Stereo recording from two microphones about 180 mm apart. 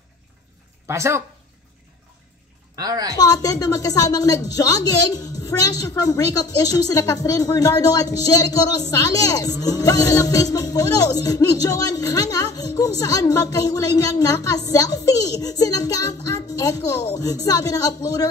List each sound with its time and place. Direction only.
0.8 s speech: 15° right (ahead or behind)
2.7 s a woman's voice: 20° right (ahead or behind)
3.2 s speech: 20° left (ahead or behind)